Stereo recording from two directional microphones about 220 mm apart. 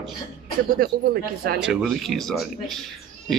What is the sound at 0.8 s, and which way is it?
Speech, 40° right (ahead or behind).